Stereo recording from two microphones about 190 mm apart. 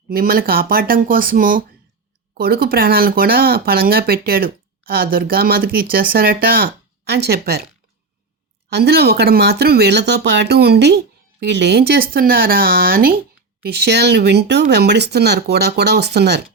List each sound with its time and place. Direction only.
0.1 s speech: 50° right (ahead or behind)
8.7 s speech: 55° right (ahead or behind)